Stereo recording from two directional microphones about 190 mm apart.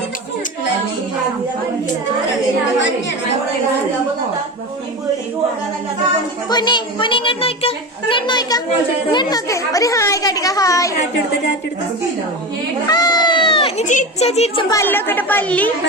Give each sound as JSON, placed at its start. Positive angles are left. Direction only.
{"t": 6.5, "sound": "a woman's voice", "side_deg": 25}
{"t": 12.9, "sound": "speech", "side_deg": 20}
{"t": 14.8, "sound": "a woman's voice", "side_deg": 10}